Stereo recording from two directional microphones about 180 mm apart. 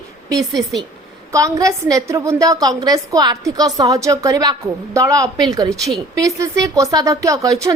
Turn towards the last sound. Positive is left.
turn(degrees=-20)  # may be behind; listen again after turning